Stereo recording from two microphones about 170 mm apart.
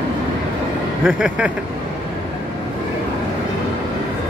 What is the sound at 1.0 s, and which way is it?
Speech, 5° right (ahead or behind).